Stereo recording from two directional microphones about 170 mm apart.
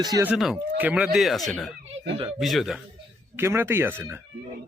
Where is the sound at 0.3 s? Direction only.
Centre (ahead or behind).